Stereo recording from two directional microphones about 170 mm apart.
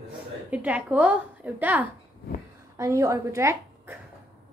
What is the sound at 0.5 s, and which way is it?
A woman's voice, 10° right (ahead or behind).